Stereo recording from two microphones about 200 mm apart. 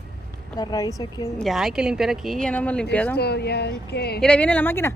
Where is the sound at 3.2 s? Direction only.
55° left (ahead or behind).